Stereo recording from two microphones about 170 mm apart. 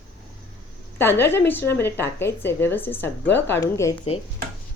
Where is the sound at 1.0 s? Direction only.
10° left (ahead or behind).